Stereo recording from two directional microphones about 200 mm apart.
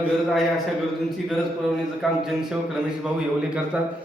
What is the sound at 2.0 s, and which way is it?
Speech, centre (ahead or behind).